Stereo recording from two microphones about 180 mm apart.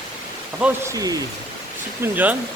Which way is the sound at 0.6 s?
10° right (ahead or behind).